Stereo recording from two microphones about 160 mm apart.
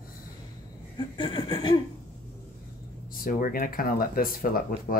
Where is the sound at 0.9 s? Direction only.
30° left (ahead or behind).